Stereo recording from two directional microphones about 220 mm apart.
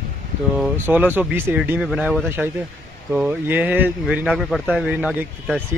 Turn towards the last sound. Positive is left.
turn(degrees=-5)  # may be behind; listen again after turning